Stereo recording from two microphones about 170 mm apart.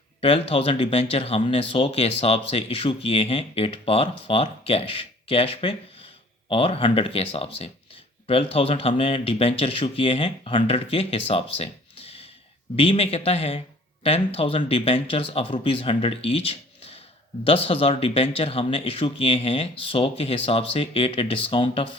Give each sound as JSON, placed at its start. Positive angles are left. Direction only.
{"t": 0.2, "sound": "speech", "side_deg": 35}